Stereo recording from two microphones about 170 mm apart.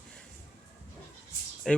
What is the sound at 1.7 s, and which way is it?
Speech, 5° left (ahead or behind).